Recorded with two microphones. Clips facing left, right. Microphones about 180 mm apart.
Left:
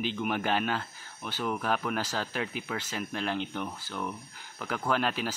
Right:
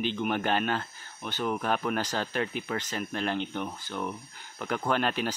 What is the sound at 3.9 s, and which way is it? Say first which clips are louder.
Speech: right 2 dB; 5° right (ahead or behind).